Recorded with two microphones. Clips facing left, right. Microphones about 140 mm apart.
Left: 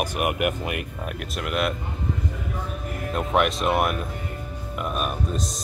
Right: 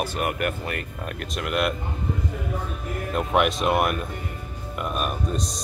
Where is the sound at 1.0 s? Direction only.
5° left (ahead or behind).